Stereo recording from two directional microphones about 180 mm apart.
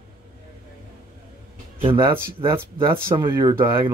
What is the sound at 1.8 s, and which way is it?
Speech, 30° right (ahead or behind).